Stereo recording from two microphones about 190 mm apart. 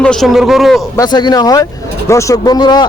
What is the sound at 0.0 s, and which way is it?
Speech, 5° left (ahead or behind).